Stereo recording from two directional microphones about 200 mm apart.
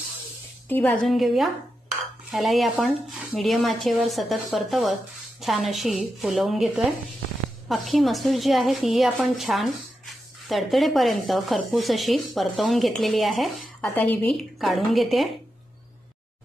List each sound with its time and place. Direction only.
0.7 s a woman's voice: 10° left (ahead or behind)